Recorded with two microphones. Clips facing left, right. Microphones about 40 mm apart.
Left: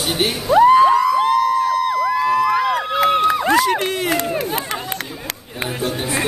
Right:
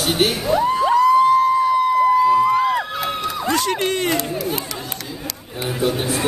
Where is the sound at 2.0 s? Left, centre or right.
Left.